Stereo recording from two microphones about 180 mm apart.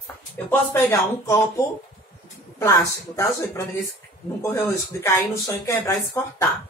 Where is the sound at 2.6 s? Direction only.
15° left (ahead or behind).